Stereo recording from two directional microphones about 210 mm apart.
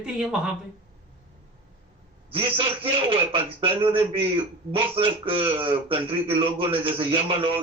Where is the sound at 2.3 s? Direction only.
25° right (ahead or behind).